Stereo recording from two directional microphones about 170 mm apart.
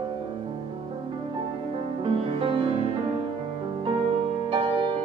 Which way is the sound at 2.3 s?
30° right (ahead or behind).